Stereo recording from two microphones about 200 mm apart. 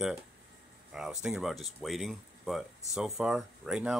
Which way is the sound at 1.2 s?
Centre (ahead or behind).